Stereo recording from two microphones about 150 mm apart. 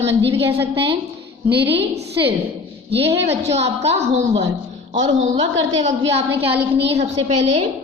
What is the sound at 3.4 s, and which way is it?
A woman's voice, 45° right (ahead or behind).